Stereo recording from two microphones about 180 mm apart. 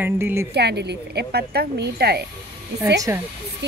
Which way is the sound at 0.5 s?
65° right (ahead or behind).